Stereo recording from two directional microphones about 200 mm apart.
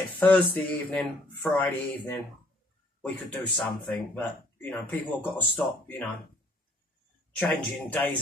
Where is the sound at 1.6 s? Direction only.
10° left (ahead or behind).